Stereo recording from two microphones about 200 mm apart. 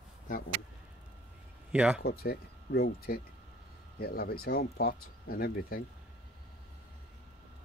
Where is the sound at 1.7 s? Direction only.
5° right (ahead or behind).